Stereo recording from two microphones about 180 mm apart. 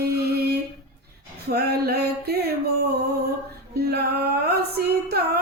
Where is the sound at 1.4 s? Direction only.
65° right (ahead or behind).